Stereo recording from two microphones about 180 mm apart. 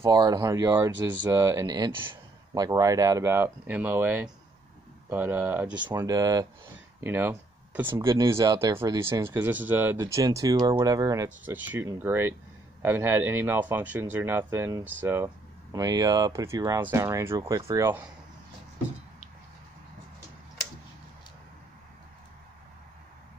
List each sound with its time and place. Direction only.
0.0 s speech: 20° right (ahead or behind)
5.8 s speech: 20° right (ahead or behind)